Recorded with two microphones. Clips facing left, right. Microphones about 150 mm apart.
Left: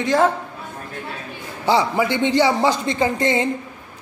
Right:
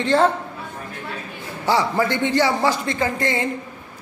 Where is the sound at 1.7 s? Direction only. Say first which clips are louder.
Left 1 dB; 15° left (ahead or behind).